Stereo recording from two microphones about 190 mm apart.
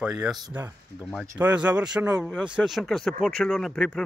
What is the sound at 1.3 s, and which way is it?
Speech, 10° right (ahead or behind).